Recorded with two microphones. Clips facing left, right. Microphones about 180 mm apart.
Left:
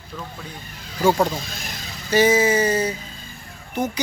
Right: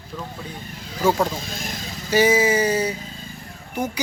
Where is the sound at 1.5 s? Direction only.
45° right (ahead or behind).